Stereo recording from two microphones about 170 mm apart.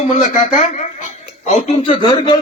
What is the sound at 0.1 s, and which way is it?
A man's voice, 45° left (ahead or behind).